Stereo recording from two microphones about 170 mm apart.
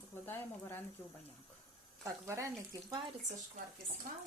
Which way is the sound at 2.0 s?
15° right (ahead or behind).